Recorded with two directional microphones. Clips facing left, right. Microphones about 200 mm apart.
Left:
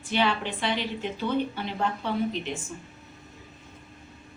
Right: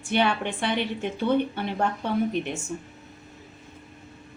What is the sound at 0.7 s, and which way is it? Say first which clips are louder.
A woman's voice: right 3 dB; 55° right (ahead or behind).